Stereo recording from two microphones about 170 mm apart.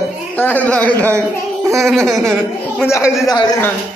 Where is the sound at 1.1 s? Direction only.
15° right (ahead or behind).